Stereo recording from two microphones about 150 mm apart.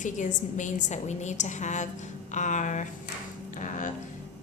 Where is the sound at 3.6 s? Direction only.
60° left (ahead or behind).